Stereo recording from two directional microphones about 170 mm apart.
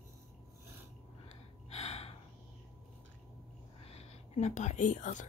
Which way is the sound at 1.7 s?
35° left (ahead or behind).